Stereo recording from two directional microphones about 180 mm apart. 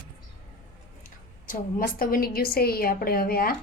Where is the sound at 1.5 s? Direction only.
55° left (ahead or behind).